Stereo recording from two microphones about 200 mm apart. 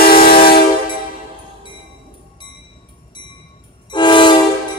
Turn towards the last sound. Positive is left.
turn(degrees=25)  # may be behind; listen again after turning